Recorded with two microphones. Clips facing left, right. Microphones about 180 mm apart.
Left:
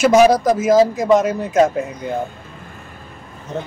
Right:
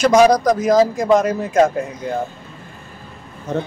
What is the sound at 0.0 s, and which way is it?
Speech, 5° left (ahead or behind).